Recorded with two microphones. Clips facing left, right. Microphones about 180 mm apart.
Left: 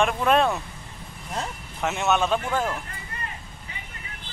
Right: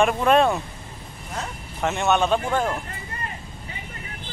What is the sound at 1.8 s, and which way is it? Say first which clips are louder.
Speech: right 2 dB; 5° left (ahead or behind).